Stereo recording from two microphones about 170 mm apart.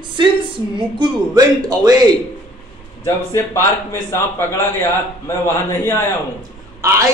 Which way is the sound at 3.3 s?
15° left (ahead or behind).